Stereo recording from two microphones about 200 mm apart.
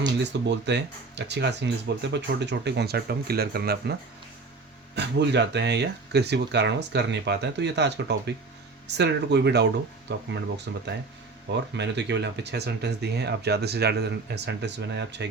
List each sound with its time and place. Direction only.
0.2 s speech: 60° right (ahead or behind)
4.9 s speech: 60° right (ahead or behind)